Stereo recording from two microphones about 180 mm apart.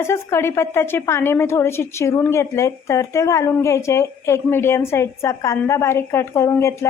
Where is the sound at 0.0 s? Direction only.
15° left (ahead or behind).